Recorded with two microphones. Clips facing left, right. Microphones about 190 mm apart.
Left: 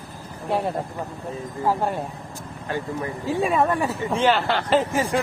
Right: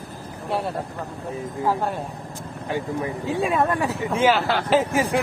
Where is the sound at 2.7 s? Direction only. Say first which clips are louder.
Right 2 dB; 15° right (ahead or behind).